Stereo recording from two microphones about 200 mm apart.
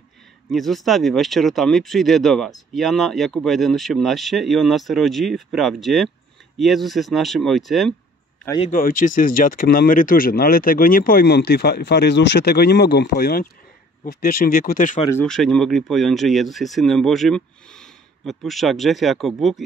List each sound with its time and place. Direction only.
0.5 s speech: centre (ahead or behind)
8.7 s speech: 40° left (ahead or behind)
15.0 s speech: 5° left (ahead or behind)